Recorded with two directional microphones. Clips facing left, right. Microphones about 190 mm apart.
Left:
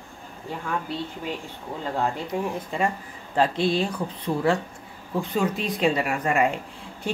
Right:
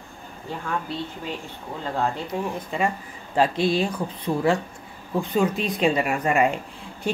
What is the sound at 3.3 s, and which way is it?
A woman's voice, 10° right (ahead or behind).